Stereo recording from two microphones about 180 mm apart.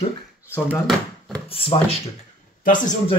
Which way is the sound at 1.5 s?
30° left (ahead or behind).